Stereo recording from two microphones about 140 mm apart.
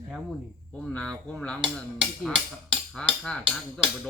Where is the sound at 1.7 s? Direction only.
Centre (ahead or behind).